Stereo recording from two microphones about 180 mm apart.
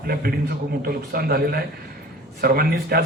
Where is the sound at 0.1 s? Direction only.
55° right (ahead or behind).